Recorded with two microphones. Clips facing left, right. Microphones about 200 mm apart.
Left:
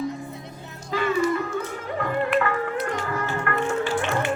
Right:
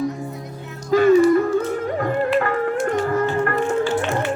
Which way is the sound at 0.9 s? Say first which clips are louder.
Right 10 dB; 45° right (ahead or behind).